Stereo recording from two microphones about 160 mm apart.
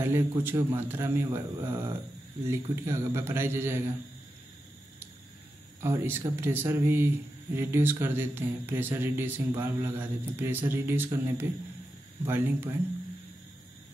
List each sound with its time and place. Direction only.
0.0 s a man's voice: 15° right (ahead or behind)
5.8 s a man's voice: 15° right (ahead or behind)